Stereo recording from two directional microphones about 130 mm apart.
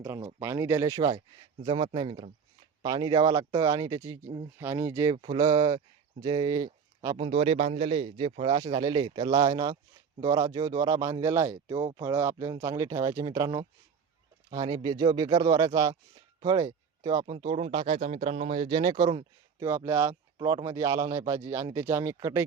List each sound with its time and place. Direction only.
0.3 s speech: 15° right (ahead or behind)
1.7 s speech: 40° right (ahead or behind)
3.1 s speech: 30° right (ahead or behind)
5.1 s speech: 40° right (ahead or behind)
7.2 s speech: 50° right (ahead or behind); by 13.7 s 25° right (ahead or behind)
14.8 s speech: 35° right (ahead or behind)
17.3 s speech: 45° right (ahead or behind)
19.6 s speech: 20° right (ahead or behind)